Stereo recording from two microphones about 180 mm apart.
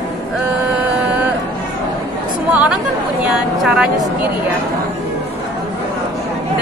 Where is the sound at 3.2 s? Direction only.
5° right (ahead or behind).